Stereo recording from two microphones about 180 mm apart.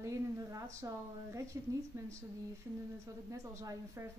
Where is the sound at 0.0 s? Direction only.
15° right (ahead or behind).